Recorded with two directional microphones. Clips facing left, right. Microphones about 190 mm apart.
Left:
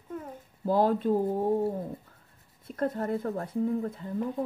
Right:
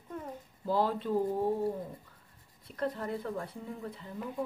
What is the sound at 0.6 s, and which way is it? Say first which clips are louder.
Speech: left 6 dB; 50° left (ahead or behind).